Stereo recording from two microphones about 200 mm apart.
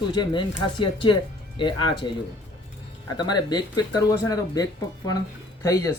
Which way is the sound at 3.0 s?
20° left (ahead or behind).